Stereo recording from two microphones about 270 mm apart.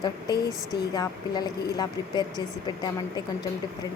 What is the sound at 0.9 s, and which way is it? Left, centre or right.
Speech, centre.